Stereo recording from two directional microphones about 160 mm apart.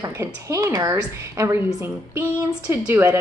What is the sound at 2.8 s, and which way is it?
Speech, 15° right (ahead or behind).